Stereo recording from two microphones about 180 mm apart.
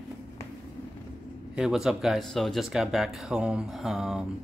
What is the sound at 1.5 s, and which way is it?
Speech, 5° right (ahead or behind).